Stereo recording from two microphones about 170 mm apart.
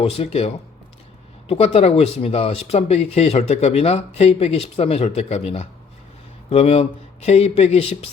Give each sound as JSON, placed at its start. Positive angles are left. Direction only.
{"t": 0.0, "sound": "speech", "side_deg": 35}